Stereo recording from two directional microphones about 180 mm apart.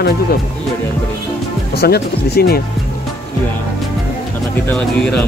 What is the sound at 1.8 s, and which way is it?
Speech, 60° left (ahead or behind).